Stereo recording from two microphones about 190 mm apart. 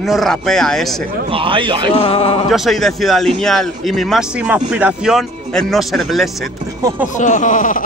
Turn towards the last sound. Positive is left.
turn(degrees=45)  # may be behind; listen again after turning